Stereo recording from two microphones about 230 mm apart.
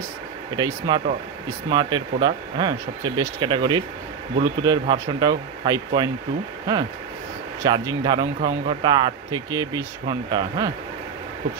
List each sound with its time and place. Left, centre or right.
0.6 s speech: centre
7.6 s speech: centre